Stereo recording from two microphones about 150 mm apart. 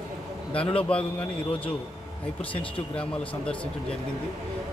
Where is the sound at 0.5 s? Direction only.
40° left (ahead or behind).